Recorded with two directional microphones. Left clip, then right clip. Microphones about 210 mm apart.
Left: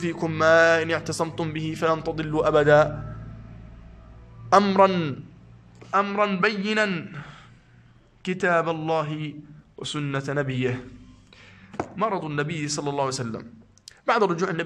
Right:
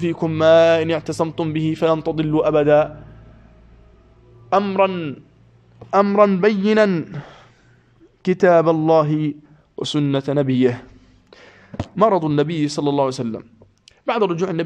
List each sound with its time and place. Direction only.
0.0 s speech: 15° right (ahead or behind)
4.5 s a man's voice: 5° right (ahead or behind)
5.9 s a man's voice: 25° right (ahead or behind)